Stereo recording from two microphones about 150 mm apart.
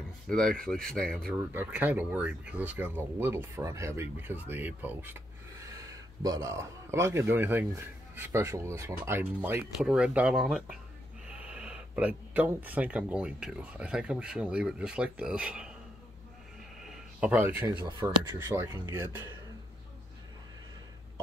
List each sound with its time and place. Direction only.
0.3 s speech: 5° left (ahead or behind)
1.3 s speech: 15° right (ahead or behind)
17.2 s speech: 10° right (ahead or behind)